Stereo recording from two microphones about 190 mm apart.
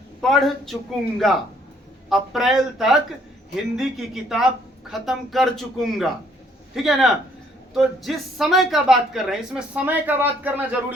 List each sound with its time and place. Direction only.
0.2 s speech: centre (ahead or behind)